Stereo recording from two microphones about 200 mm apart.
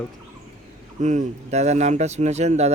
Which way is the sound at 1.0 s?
35° right (ahead or behind).